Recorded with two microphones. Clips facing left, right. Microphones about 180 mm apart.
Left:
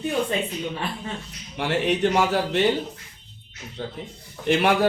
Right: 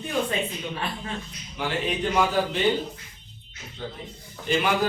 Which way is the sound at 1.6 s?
75° left (ahead or behind).